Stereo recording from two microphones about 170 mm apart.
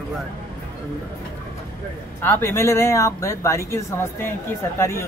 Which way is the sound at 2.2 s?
15° left (ahead or behind).